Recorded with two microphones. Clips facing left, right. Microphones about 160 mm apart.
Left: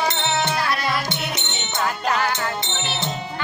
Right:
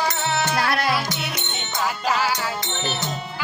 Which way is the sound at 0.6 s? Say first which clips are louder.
Right 2 dB; 65° right (ahead or behind).